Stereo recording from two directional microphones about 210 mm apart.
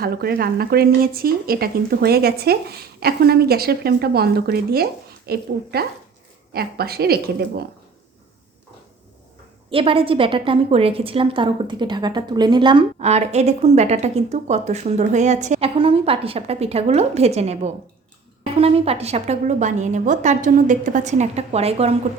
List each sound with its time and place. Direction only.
0.0 s speech: 45° right (ahead or behind)
9.6 s a woman's voice: 25° right (ahead or behind)